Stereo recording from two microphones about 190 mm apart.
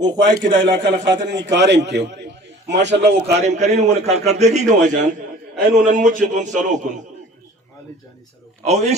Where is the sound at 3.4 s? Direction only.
35° right (ahead or behind).